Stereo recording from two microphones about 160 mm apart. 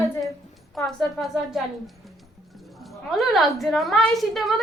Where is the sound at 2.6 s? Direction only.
Centre (ahead or behind).